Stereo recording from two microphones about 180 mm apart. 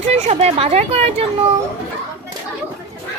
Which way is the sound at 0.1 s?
35° right (ahead or behind).